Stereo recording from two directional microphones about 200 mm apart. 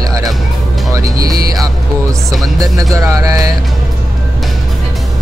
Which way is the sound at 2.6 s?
15° right (ahead or behind).